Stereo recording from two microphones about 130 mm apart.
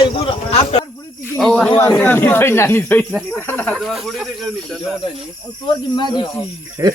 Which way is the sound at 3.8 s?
Centre (ahead or behind).